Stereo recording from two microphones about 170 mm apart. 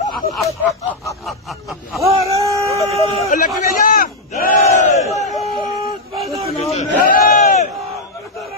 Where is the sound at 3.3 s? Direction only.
50° left (ahead or behind).